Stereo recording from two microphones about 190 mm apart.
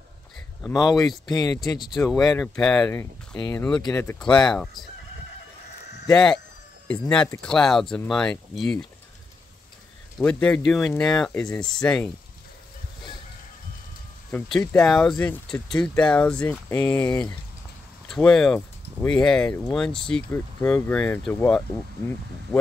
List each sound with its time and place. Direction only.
0.7 s speech: 20° left (ahead or behind)
2.0 s speech: 5° left (ahead or behind)
2.9 s speech: 15° left (ahead or behind)
4.3 s speech: 20° left (ahead or behind)
6.1 s speech: 5° left (ahead or behind)
10.1 s speech: 5° left (ahead or behind)
14.3 s speech: 10° left (ahead or behind)